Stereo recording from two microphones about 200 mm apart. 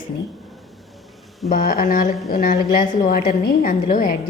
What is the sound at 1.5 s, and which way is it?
A woman's voice, 45° left (ahead or behind).